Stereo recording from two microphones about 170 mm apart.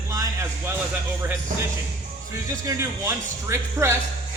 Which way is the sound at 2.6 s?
15° right (ahead or behind).